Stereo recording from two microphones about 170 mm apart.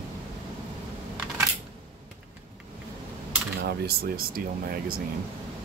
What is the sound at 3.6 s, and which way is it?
Speech, 65° right (ahead or behind).